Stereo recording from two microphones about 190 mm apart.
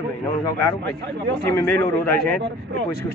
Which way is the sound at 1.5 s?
10° left (ahead or behind).